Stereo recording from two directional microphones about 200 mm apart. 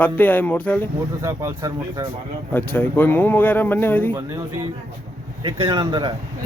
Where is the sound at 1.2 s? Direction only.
15° right (ahead or behind).